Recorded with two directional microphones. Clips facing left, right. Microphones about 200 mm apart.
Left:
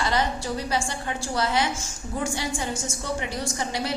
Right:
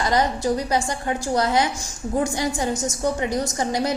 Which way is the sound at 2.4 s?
40° right (ahead or behind).